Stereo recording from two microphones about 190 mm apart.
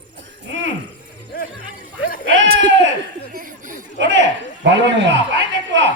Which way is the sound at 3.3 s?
45° right (ahead or behind).